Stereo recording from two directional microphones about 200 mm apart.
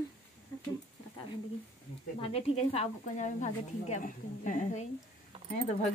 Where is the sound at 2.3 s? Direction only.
30° left (ahead or behind).